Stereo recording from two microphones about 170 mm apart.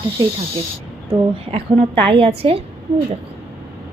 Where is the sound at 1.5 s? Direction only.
35° right (ahead or behind).